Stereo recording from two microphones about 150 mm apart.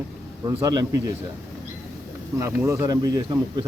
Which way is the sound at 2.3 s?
20° right (ahead or behind).